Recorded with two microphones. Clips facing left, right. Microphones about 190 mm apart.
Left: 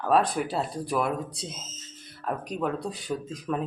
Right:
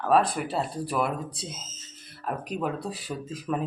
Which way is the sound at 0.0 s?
Centre (ahead or behind).